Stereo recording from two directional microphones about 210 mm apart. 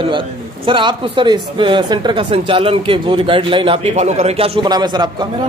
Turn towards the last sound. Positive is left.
turn(degrees=-20)  # may be behind; listen again after turning